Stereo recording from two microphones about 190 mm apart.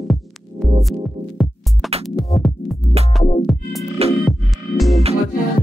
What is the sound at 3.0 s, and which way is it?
Music, 30° right (ahead or behind).